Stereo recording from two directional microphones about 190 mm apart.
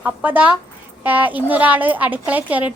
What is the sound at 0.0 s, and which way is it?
A woman's voice, 10° right (ahead or behind).